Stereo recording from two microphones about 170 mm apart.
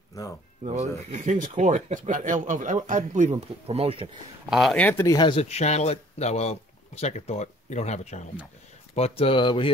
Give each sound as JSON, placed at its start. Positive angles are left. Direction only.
{"t": 0.1, "sound": "speech", "side_deg": 20}
{"t": 0.7, "sound": "speech", "side_deg": -45}
{"t": 4.5, "sound": "speech", "side_deg": 0}
{"t": 4.8, "sound": "speech", "side_deg": 15}